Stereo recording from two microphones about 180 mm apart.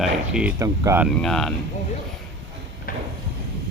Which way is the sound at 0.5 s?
20° right (ahead or behind).